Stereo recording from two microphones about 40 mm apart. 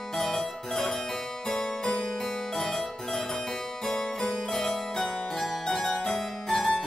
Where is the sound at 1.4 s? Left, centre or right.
Centre.